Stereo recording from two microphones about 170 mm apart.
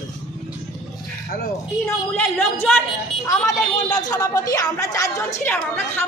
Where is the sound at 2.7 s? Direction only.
5° left (ahead or behind).